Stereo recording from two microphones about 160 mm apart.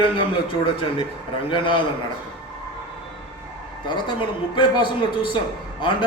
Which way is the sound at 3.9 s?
30° left (ahead or behind).